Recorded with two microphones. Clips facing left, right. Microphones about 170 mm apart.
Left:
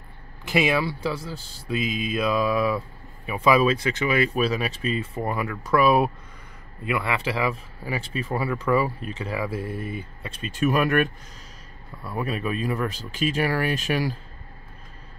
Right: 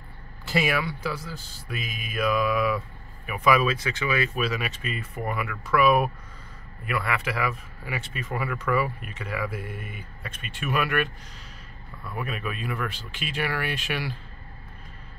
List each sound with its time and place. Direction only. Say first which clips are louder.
0.5 s a man's voice: left 3 dB; 20° left (ahead or behind)
6.8 s a man's voice: left 3 dB; 20° left (ahead or behind); by 14.1 s 40° left (ahead or behind)